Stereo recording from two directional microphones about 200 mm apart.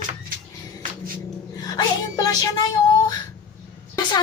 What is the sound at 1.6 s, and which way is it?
Speech, 20° left (ahead or behind).